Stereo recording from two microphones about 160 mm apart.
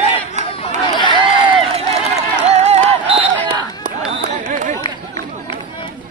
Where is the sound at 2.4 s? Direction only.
40° right (ahead or behind).